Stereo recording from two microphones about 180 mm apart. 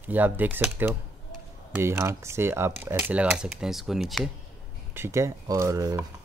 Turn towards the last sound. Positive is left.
turn(degrees=-20)  # may be behind; listen again after turning